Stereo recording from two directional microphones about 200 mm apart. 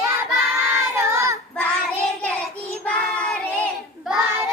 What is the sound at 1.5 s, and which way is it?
Child singing, 5° left (ahead or behind).